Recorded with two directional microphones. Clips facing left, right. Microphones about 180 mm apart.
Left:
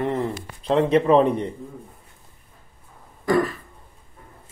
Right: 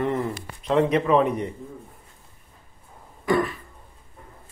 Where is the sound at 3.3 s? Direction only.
40° left (ahead or behind).